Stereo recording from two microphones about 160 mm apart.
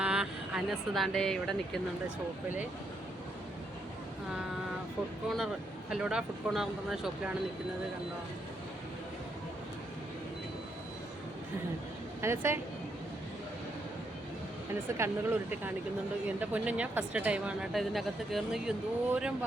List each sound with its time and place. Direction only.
0.0 s speech: 5° right (ahead or behind)
5.3 s speech: centre (ahead or behind)
12.2 s speech: 15° right (ahead or behind)
14.9 s speech: 15° right (ahead or behind)